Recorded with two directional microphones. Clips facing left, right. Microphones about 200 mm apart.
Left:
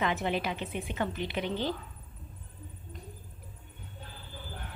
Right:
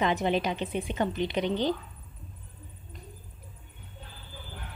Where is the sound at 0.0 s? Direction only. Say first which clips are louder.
Right 4 dB; 20° right (ahead or behind).